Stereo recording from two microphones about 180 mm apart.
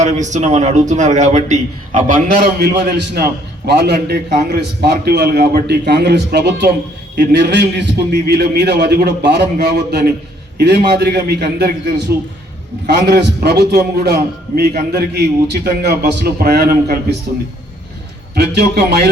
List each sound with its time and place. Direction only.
0.0 s a man's voice: 40° right (ahead or behind); by 17.2 s 60° right (ahead or behind)
18.3 s a man's voice: 65° right (ahead or behind)